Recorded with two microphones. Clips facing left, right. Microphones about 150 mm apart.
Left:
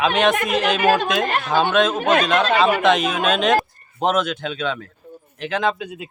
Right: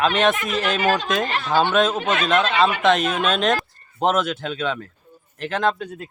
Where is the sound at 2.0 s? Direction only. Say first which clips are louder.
Left 3 dB; 45° left (ahead or behind).